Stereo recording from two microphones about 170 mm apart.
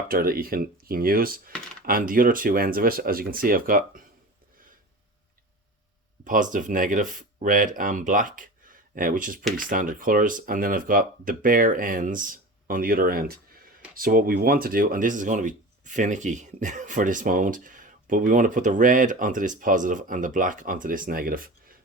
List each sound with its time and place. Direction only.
0.1 s speech: 60° right (ahead or behind)
6.2 s speech: 50° right (ahead or behind)